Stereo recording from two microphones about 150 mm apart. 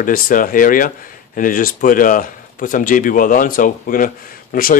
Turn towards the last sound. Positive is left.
turn(degrees=70)  # may be behind; listen again after turning